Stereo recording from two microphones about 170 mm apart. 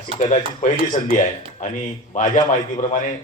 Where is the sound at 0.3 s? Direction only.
50° left (ahead or behind).